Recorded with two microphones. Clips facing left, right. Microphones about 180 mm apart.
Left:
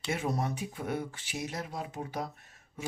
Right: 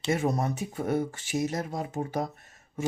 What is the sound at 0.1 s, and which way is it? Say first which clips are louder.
Speech: right 5 dB; 45° right (ahead or behind).